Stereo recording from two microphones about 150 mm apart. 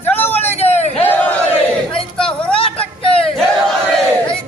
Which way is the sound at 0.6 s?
45° left (ahead or behind).